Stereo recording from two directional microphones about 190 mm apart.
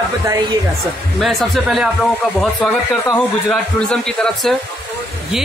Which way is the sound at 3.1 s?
5° left (ahead or behind).